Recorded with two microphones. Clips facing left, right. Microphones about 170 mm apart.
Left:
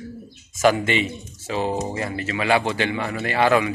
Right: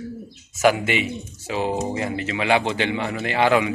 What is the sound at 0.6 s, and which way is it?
Speech, 10° right (ahead or behind).